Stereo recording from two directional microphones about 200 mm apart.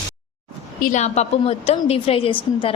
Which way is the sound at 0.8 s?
40° left (ahead or behind).